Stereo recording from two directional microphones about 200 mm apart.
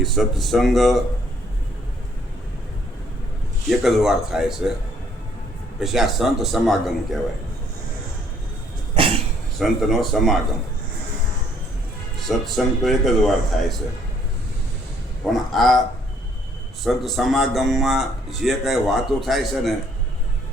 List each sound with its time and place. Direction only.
0.0 s a man's voice: centre (ahead or behind)
3.7 s a man's voice: centre (ahead or behind)
5.8 s a man's voice: centre (ahead or behind)
9.0 s a sound: 25° right (ahead or behind)
9.6 s a man's voice: centre (ahead or behind)
12.3 s a man's voice: centre (ahead or behind)
15.3 s a man's voice: centre (ahead or behind)
16.8 s a man's voice: centre (ahead or behind)